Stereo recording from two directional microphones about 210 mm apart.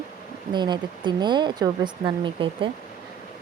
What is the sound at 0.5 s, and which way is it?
Speech, 20° right (ahead or behind).